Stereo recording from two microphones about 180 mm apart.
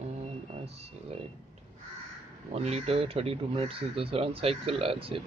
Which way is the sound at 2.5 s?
35° right (ahead or behind).